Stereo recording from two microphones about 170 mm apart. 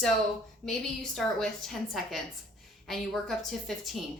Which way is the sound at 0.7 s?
Centre (ahead or behind).